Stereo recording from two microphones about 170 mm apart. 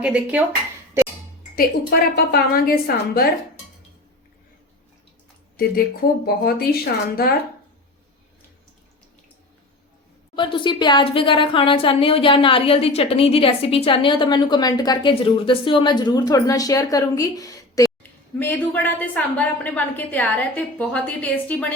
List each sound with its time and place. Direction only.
0.0 s speech: 10° right (ahead or behind)
1.5 s a woman's voice: 65° left (ahead or behind)
6.2 s a woman's voice: 65° left (ahead or behind)
10.3 s a woman's voice: 30° left (ahead or behind); by 21.7 s 10° left (ahead or behind)